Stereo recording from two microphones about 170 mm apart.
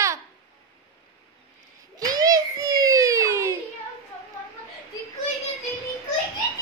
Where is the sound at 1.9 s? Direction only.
20° right (ahead or behind).